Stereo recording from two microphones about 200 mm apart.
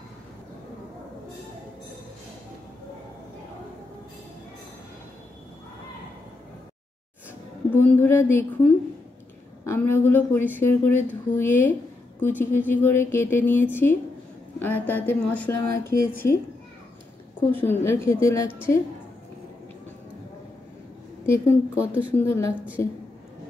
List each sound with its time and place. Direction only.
7.9 s speech: 10° left (ahead or behind)
17.4 s speech: 10° left (ahead or behind)
21.3 s speech: 15° left (ahead or behind)